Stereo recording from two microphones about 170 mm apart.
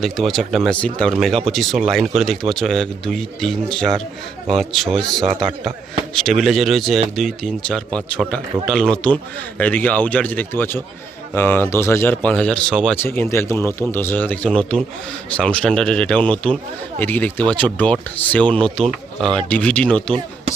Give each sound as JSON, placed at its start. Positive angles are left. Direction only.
{"t": 0.0, "sound": "speech", "side_deg": 0}
{"t": 13.1, "sound": "speech", "side_deg": 15}